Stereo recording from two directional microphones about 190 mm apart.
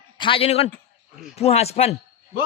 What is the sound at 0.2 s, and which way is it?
Speech, 30° left (ahead or behind).